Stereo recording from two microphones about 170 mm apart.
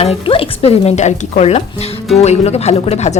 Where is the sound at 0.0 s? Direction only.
35° left (ahead or behind).